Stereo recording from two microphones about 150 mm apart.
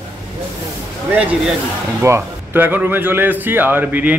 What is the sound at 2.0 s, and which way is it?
Speech, 15° right (ahead or behind).